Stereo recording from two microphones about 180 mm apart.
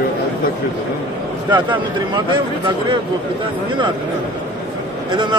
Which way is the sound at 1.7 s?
25° right (ahead or behind).